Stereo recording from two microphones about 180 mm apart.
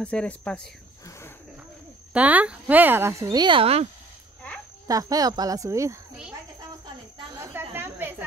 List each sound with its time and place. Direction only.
0.0 s speech: 5° left (ahead or behind)
2.1 s speech: 10° right (ahead or behind); by 3.9 s 35° right (ahead or behind)
4.8 s speech: 20° right (ahead or behind)
7.3 s cricket: 15° right (ahead or behind)
7.7 s a sound: 10° right (ahead or behind)